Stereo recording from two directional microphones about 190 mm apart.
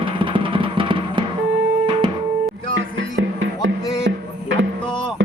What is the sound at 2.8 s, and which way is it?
Music, 85° right.